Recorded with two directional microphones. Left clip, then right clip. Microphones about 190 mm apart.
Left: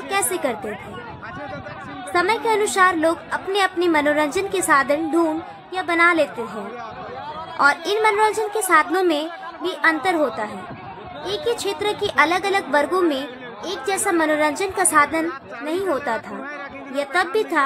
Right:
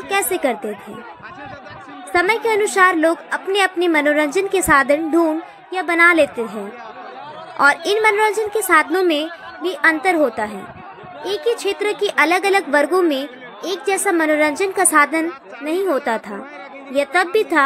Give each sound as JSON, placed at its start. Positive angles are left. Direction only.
{"t": 0.1, "sound": "a woman's voice", "side_deg": -15}
{"t": 2.1, "sound": "a woman's voice", "side_deg": -15}
{"t": 7.5, "sound": "a woman's voice", "side_deg": -15}